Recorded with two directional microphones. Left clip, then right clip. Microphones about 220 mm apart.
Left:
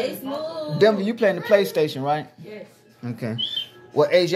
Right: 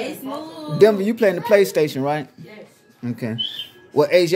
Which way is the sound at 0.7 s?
35° right (ahead or behind).